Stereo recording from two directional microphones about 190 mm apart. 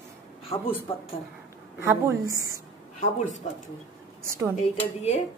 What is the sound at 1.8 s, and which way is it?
Speech, 15° right (ahead or behind).